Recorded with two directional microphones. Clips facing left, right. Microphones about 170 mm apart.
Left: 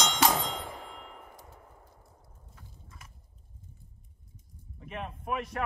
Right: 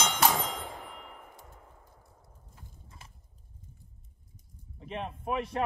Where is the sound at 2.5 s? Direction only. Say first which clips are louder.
Even; 30° right (ahead or behind).